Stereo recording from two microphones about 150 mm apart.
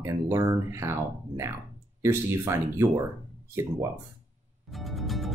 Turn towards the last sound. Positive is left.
turn(degrees=0)  # may be behind; listen again after turning